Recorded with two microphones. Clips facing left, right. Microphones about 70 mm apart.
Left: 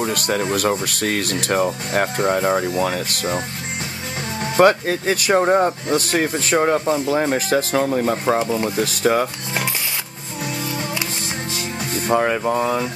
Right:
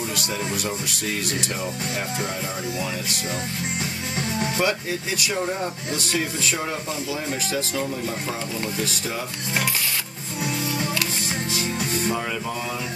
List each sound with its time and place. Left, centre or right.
0.0 s speech: left
4.6 s speech: left
12.1 s speech: left